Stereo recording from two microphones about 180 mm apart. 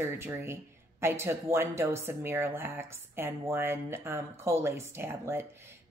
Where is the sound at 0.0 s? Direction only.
15° right (ahead or behind).